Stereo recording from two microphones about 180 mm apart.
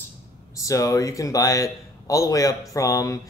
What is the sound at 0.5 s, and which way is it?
A man's voice, 20° left (ahead or behind).